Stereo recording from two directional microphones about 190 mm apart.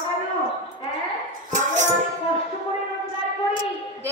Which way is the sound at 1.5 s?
40° right (ahead or behind).